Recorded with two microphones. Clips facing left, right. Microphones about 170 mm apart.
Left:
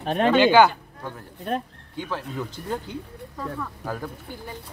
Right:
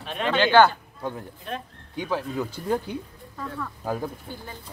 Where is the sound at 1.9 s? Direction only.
10° right (ahead or behind).